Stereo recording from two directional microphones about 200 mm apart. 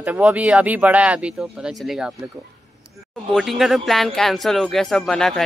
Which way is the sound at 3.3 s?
Centre (ahead or behind).